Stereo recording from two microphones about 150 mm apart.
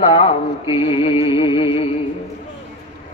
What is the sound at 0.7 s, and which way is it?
Music, 35° left (ahead or behind).